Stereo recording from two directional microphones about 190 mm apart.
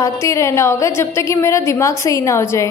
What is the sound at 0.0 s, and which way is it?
A woman's voice, 15° left (ahead or behind).